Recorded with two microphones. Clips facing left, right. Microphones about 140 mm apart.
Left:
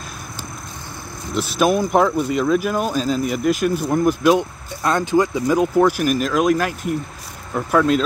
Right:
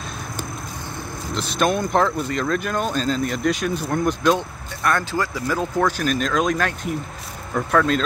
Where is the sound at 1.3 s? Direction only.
5° left (ahead or behind).